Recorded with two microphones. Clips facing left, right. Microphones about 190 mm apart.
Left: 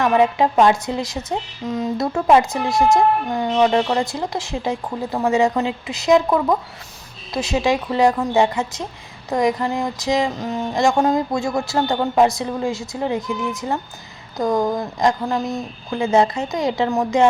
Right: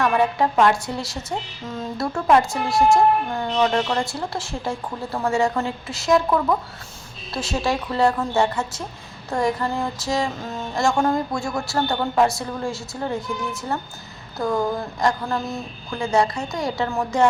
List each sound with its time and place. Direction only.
0.0 s a woman's voice: 20° left (ahead or behind)